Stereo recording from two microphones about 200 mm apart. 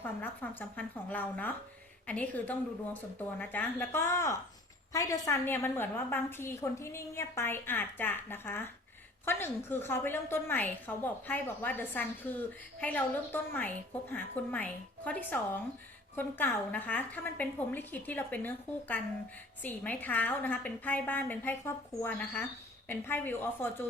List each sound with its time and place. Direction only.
0.4 s a woman's voice: 10° left (ahead or behind)